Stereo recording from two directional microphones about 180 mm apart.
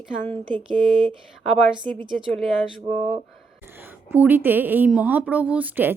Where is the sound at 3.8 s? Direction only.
10° right (ahead or behind).